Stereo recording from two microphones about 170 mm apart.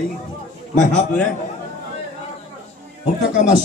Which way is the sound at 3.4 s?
45° left (ahead or behind).